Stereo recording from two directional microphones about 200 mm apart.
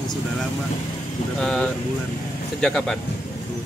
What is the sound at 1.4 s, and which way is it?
Speech, 5° left (ahead or behind).